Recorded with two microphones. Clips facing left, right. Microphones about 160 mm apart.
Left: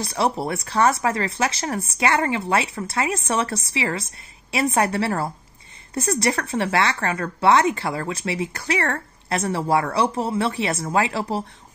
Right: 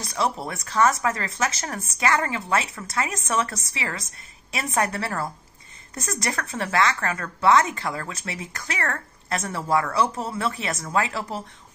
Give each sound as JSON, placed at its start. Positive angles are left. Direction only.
{"t": 0.0, "sound": "speech", "side_deg": 30}